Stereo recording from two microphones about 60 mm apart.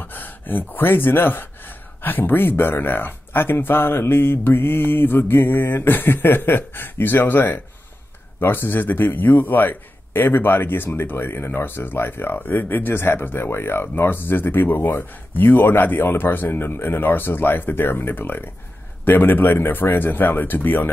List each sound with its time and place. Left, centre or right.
0.0 s a man's voice: left